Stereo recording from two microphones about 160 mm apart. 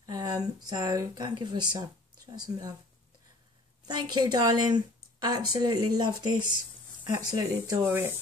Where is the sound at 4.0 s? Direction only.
25° right (ahead or behind).